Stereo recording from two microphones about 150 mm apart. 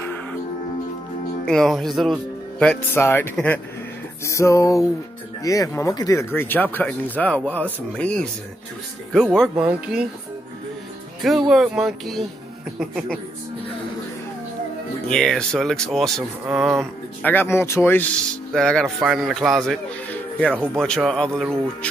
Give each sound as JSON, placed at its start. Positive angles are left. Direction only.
{"t": 0.0, "sound": "music", "side_deg": 10}
{"t": 1.4, "sound": "speech", "side_deg": 5}
{"t": 4.2, "sound": "music", "side_deg": 20}
{"t": 5.4, "sound": "speech", "side_deg": 20}
{"t": 9.6, "sound": "speech", "side_deg": -5}
{"t": 11.2, "sound": "speech", "side_deg": 0}
{"t": 15.0, "sound": "speech", "side_deg": 5}
{"t": 17.2, "sound": "speech", "side_deg": 15}
{"t": 20.4, "sound": "speech", "side_deg": -10}
{"t": 20.7, "sound": "speech", "side_deg": 5}